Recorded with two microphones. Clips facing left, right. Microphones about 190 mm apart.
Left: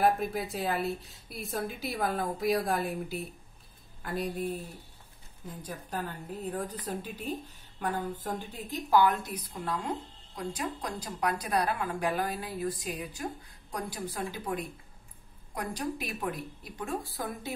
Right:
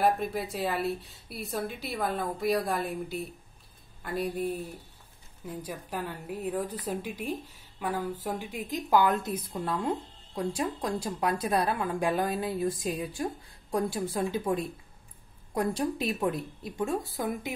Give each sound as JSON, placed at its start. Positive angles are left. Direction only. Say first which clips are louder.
{"t": 0.0, "sound": "a woman's voice", "louder": "even", "side_deg": 0}
{"t": 5.6, "sound": "a woman's voice", "louder": "right 1 dB", "side_deg": -10}